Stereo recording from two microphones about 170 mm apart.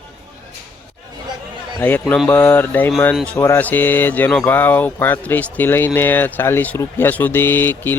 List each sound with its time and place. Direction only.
1.8 s speech: 10° left (ahead or behind)